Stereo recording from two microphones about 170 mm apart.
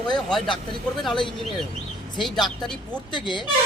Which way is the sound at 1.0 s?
Centre (ahead or behind).